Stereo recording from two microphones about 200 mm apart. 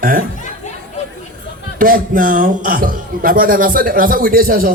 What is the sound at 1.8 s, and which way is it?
A man's voice, 45° right (ahead or behind).